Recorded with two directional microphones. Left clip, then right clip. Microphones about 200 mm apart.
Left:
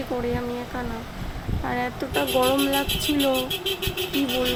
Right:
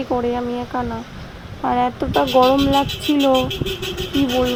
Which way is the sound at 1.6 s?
25° right (ahead or behind).